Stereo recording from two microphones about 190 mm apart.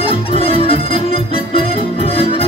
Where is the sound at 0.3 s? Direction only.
30° left (ahead or behind).